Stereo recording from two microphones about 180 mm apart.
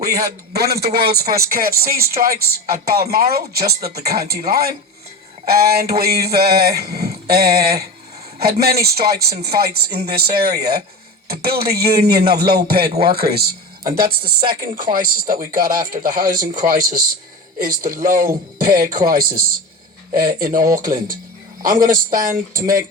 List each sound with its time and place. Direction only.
0.5 s speech: 60° right (ahead or behind)